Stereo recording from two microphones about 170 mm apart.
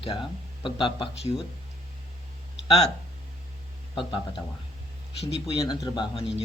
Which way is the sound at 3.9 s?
30° left (ahead or behind).